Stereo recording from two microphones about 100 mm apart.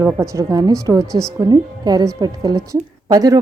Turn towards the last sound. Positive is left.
turn(degrees=-40)  # may be behind; listen again after turning